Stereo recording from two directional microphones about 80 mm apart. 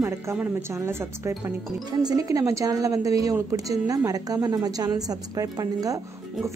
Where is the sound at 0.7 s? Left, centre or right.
Right.